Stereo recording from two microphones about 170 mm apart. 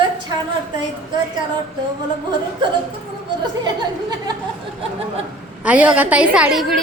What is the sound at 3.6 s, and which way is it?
Speech, 25° right (ahead or behind).